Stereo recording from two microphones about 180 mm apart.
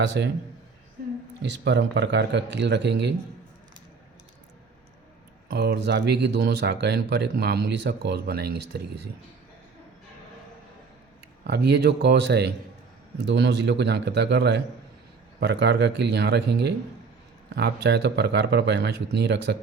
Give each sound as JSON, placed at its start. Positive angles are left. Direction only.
{"t": 0.0, "sound": "a man's voice", "side_deg": -80}
{"t": 1.4, "sound": "speech", "side_deg": -75}
{"t": 5.5, "sound": "speech", "side_deg": -65}
{"t": 11.4, "sound": "speech", "side_deg": -65}